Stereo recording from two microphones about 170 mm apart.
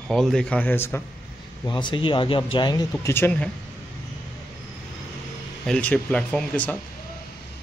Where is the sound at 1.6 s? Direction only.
25° left (ahead or behind); by 3.5 s 10° left (ahead or behind).